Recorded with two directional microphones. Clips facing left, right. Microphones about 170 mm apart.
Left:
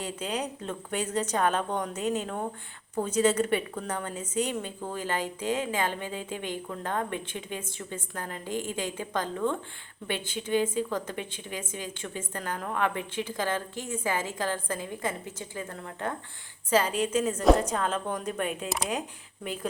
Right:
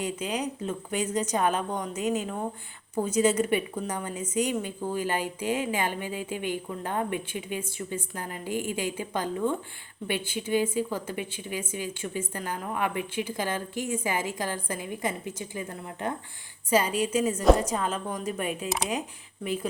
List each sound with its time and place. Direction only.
0.0 s a woman's voice: 10° right (ahead or behind)